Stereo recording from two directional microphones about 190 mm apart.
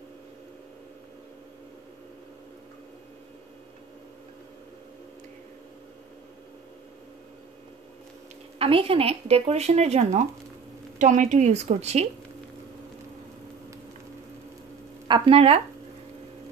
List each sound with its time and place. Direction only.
8.5 s speech: 30° right (ahead or behind)
15.0 s speech: 25° right (ahead or behind)